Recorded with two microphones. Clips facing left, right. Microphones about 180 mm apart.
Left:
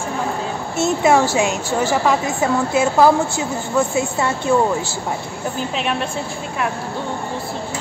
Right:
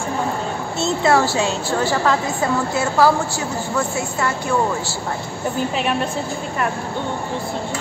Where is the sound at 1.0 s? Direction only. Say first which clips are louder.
Left 1 dB; 15° left (ahead or behind).